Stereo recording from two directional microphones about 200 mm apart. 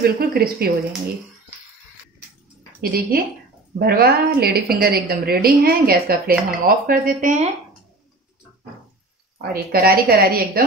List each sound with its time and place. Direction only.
0.0 s a woman's voice: 50° right (ahead or behind)
2.8 s a woman's voice: 50° right (ahead or behind)
9.4 s a woman's voice: 50° right (ahead or behind)